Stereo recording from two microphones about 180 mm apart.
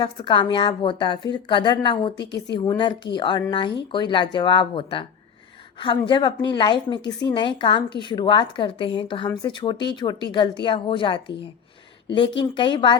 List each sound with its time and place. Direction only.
0.0 s a woman's voice: 25° left (ahead or behind)
2.1 s speech: 70° left (ahead or behind)
2.6 s a woman's voice: 25° left (ahead or behind)